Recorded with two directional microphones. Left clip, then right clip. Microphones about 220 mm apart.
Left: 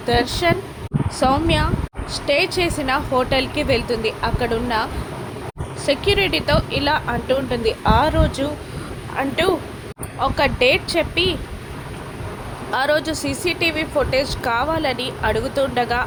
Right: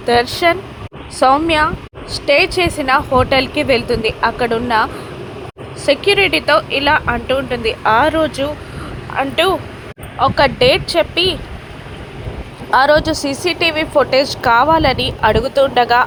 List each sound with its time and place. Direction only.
0.0 s a woman's voice: 15° right (ahead or behind)
12.7 s a woman's voice: 10° right (ahead or behind)